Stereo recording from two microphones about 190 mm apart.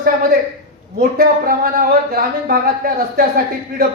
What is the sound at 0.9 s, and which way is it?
Speech, 50° right (ahead or behind).